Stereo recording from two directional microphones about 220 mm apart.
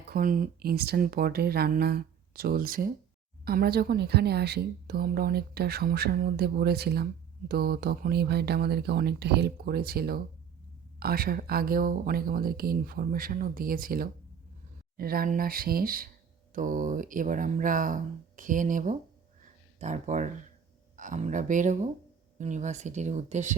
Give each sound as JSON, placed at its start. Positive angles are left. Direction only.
{"t": 0.1, "sound": "a woman's voice", "side_deg": -40}
{"t": 19.4, "sound": "a sound", "side_deg": -35}
{"t": 20.9, "sound": "speech", "side_deg": -35}